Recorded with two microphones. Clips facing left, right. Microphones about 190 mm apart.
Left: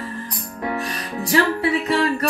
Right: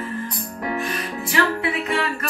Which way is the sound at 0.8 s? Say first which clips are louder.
Even; 35° left (ahead or behind).